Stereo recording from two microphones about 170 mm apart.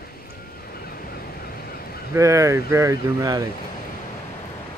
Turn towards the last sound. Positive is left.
turn(degrees=-20)  # may be behind; listen again after turning